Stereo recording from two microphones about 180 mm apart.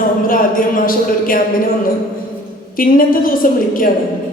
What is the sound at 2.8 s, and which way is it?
Speech, 50° left (ahead or behind).